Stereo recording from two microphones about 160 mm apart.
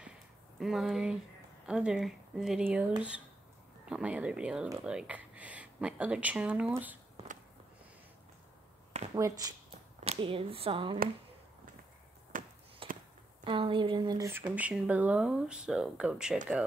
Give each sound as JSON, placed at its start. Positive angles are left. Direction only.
{"t": 0.6, "sound": "speech", "side_deg": 0}
{"t": 3.8, "sound": "speech", "side_deg": -5}
{"t": 7.2, "sound": "basketball bounce", "side_deg": -40}
{"t": 9.1, "sound": "speech", "side_deg": -25}
{"t": 9.9, "sound": "speech", "side_deg": -35}
{"t": 12.3, "sound": "a sound", "side_deg": -55}
{"t": 12.8, "sound": "a sound", "side_deg": -35}
{"t": 13.4, "sound": "speech", "side_deg": -30}
{"t": 14.5, "sound": "speech", "side_deg": -10}